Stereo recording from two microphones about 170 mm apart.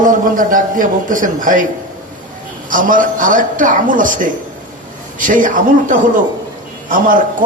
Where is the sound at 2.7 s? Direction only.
50° right (ahead or behind).